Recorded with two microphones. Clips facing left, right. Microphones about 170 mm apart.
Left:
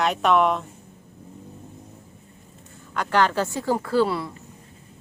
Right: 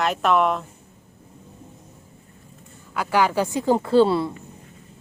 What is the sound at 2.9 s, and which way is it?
Speech, 10° right (ahead or behind).